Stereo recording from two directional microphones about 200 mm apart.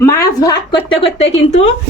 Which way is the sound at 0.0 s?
15° left (ahead or behind).